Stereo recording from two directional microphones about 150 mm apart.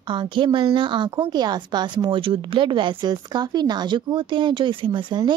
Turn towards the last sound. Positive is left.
turn(degrees=-30)  # may be behind; listen again after turning